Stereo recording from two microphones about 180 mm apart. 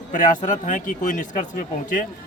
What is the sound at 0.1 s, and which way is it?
A man's voice, 45° left (ahead or behind).